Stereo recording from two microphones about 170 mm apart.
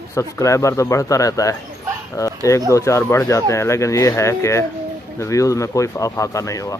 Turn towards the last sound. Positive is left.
turn(degrees=20)  # may be behind; listen again after turning